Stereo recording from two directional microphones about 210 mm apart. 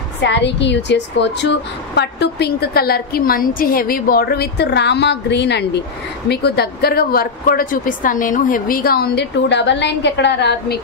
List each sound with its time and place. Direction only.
0.2 s a woman's voice: 55° left (ahead or behind)